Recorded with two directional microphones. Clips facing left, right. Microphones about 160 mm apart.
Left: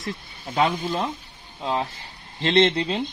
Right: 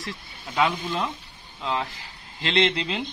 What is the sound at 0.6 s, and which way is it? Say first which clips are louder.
Speech: left 2 dB; 40° left (ahead or behind).